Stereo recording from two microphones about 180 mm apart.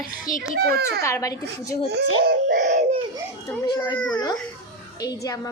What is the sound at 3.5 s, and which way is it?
Speech, 20° left (ahead or behind).